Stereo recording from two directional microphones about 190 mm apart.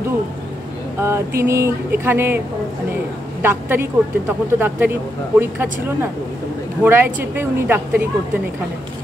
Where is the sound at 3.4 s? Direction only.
10° right (ahead or behind).